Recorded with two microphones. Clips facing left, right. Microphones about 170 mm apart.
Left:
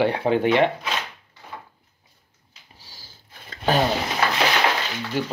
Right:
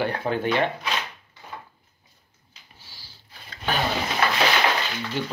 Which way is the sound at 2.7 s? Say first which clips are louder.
Left 2 dB; 40° left (ahead or behind).